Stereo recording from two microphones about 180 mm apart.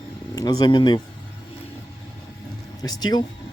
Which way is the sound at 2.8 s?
20° left (ahead or behind).